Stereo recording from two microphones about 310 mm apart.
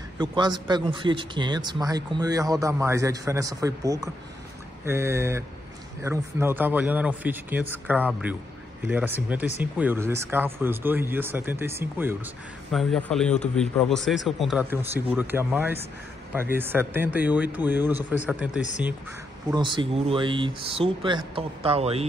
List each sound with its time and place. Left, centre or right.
0.2 s a man's voice: centre
19.5 s a man's voice: centre